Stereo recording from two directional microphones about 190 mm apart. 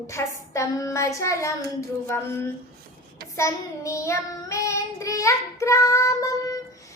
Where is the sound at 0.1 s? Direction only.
15° left (ahead or behind).